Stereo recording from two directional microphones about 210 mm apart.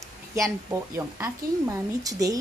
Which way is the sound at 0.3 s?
15° right (ahead or behind).